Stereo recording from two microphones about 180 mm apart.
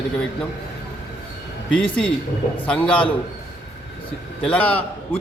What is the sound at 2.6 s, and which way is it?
Speech, 5° left (ahead or behind).